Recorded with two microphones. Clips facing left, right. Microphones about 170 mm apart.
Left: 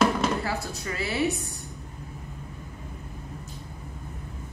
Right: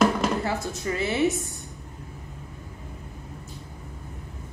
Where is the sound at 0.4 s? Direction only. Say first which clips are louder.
Right 3 dB; 20° right (ahead or behind).